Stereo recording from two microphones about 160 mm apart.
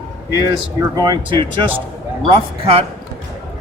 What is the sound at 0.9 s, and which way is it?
Speech, 25° right (ahead or behind).